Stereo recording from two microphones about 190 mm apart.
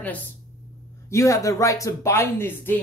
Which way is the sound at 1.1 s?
15° left (ahead or behind).